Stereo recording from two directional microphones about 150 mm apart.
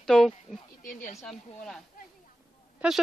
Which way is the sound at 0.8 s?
65° left (ahead or behind).